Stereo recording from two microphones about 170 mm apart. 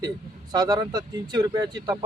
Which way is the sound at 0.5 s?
25° right (ahead or behind).